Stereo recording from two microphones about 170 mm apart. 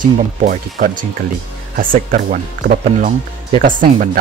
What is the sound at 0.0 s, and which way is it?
Speech, 50° right (ahead or behind).